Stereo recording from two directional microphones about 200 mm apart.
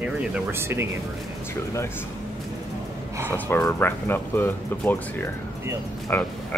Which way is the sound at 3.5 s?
10° left (ahead or behind).